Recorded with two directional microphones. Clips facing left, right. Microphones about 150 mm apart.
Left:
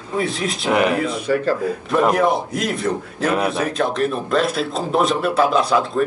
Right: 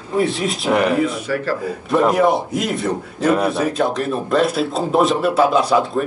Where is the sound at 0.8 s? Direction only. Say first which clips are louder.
Right 1 dB; 20° left (ahead or behind).